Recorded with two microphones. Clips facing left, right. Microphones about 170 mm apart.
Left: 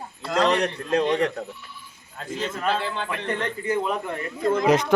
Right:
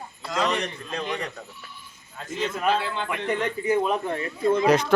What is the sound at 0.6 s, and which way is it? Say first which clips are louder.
Speech: left 9 dB; 80° left.